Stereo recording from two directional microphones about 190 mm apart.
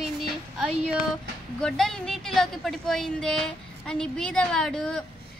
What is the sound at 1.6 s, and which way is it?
A woman's voice, centre (ahead or behind).